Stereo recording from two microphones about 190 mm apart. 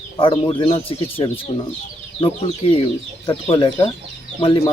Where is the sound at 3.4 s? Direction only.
30° left (ahead or behind).